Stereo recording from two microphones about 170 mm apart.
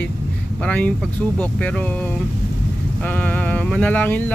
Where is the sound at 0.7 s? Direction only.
10° left (ahead or behind).